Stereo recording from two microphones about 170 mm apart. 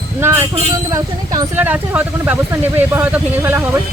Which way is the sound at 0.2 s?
15° right (ahead or behind).